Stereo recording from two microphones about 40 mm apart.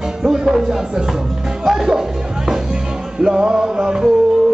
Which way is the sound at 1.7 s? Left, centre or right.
Centre.